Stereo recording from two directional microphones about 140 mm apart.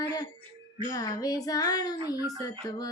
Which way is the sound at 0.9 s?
25° left (ahead or behind).